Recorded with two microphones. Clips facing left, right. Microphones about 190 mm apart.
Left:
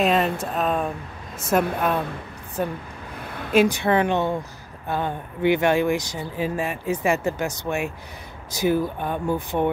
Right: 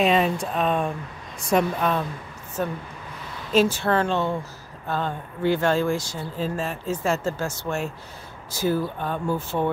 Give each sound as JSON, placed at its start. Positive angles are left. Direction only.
{"t": 0.0, "sound": "a woman's voice", "side_deg": 0}
{"t": 3.2, "sound": "a sound", "side_deg": 60}
{"t": 3.5, "sound": "a woman's voice", "side_deg": 15}